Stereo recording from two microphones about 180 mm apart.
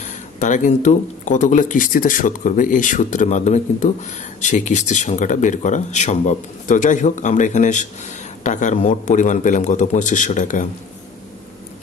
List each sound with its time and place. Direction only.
0.0 s speech: 45° left (ahead or behind)